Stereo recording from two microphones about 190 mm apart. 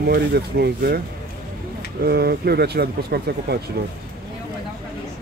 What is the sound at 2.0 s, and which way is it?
Speech, 55° right (ahead or behind).